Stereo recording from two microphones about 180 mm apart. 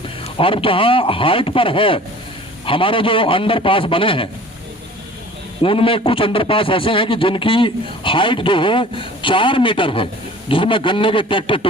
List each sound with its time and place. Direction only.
0.3 s speech: 30° left (ahead or behind)
5.6 s speech: 30° left (ahead or behind)